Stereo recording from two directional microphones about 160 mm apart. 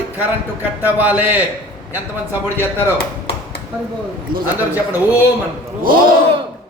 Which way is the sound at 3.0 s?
85° left.